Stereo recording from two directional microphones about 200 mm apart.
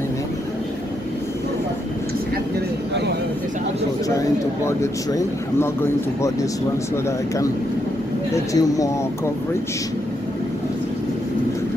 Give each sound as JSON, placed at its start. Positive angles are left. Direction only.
{"t": 4.6, "sound": "speech", "side_deg": 15}
{"t": 8.5, "sound": "speech", "side_deg": 15}